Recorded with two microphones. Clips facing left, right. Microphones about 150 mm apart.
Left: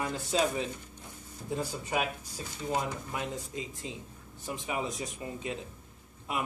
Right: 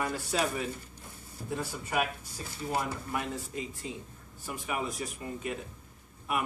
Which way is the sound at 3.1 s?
25° left (ahead or behind).